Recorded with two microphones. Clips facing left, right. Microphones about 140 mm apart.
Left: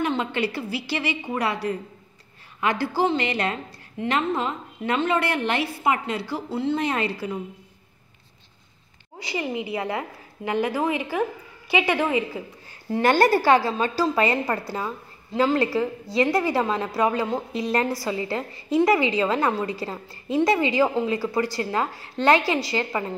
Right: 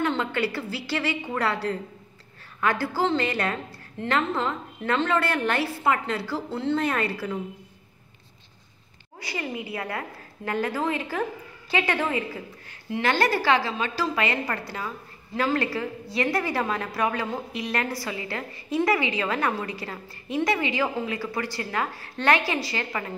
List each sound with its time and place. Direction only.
0.0 s a woman's voice: 15° left (ahead or behind)
9.3 s a woman's voice: 20° left (ahead or behind)
12.9 s a woman's voice: 45° left (ahead or behind); by 23.1 s 25° left (ahead or behind)